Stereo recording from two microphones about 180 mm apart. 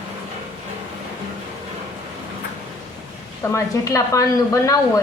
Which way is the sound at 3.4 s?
15° left (ahead or behind).